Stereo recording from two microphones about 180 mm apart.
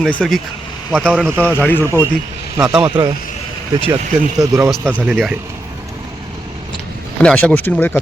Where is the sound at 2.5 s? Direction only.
15° right (ahead or behind).